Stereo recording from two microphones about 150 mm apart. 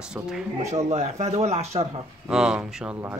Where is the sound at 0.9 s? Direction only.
50° right (ahead or behind).